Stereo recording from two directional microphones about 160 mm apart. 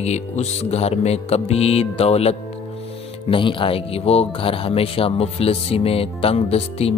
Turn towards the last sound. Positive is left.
turn(degrees=40)  # may be behind; listen again after turning